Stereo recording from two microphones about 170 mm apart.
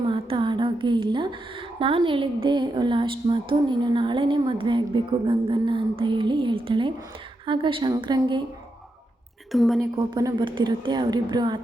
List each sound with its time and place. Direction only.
0.1 s a sound: 30° right (ahead or behind)
1.8 s a woman's voice: 30° right (ahead or behind)
9.5 s a woman's voice: centre (ahead or behind)
10.2 s a woman's voice: 25° right (ahead or behind)